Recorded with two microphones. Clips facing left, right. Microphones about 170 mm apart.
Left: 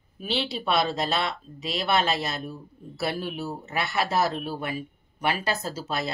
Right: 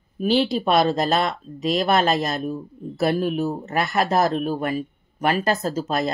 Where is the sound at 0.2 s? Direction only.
45° right (ahead or behind).